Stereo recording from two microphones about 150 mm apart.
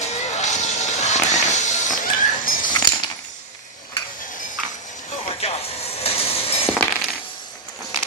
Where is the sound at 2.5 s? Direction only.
65° left (ahead or behind).